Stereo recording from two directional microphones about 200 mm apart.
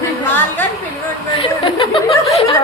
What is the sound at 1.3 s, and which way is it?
Speech, 25° left (ahead or behind).